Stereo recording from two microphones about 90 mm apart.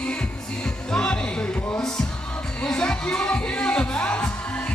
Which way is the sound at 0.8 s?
10° left (ahead or behind).